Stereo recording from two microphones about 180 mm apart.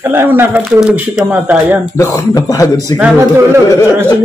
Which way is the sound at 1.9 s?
20° left (ahead or behind).